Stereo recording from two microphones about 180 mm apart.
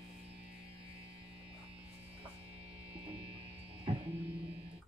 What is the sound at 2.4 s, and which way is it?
Music, 30° right (ahead or behind).